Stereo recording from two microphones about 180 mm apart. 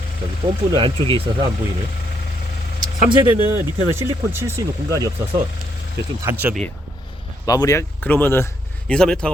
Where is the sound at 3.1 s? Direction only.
25° right (ahead or behind).